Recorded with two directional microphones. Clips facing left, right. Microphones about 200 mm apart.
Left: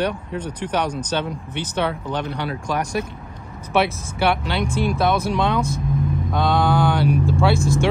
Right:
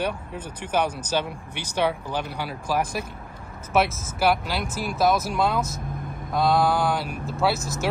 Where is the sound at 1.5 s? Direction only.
60° left (ahead or behind).